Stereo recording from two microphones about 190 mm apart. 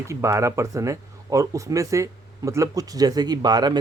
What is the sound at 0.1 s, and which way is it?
Speech, 15° right (ahead or behind).